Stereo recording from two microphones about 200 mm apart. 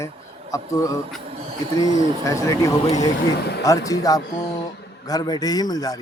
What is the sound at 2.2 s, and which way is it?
A man's voice, 15° left (ahead or behind).